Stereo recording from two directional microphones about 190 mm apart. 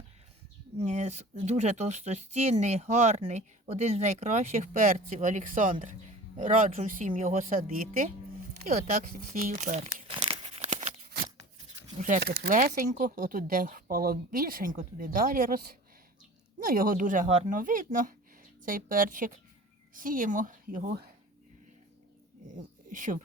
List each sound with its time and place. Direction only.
0.8 s speech: 40° right (ahead or behind)
12.2 s speech: 60° right (ahead or behind)
12.5 s speech: 50° right (ahead or behind)
22.5 s speech: 45° right (ahead or behind)